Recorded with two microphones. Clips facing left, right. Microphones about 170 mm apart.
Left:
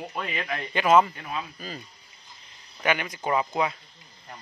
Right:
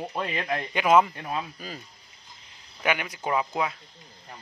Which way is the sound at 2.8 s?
5° right (ahead or behind).